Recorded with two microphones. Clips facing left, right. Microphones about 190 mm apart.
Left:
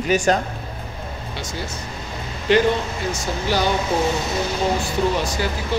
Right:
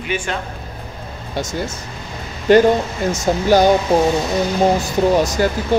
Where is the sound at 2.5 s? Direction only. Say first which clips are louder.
Right 6 dB; 45° right (ahead or behind).